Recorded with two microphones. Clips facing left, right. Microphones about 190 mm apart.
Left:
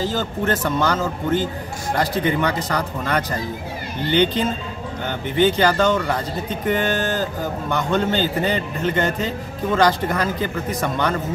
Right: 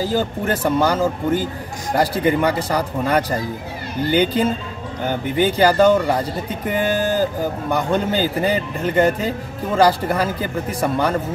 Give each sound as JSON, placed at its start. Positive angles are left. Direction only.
{"t": 0.5, "sound": "a man's voice", "side_deg": -10}